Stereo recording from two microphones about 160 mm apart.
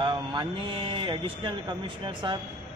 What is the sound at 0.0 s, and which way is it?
Speech, 30° right (ahead or behind).